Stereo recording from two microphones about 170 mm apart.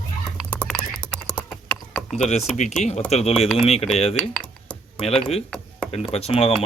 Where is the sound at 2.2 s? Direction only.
40° left (ahead or behind).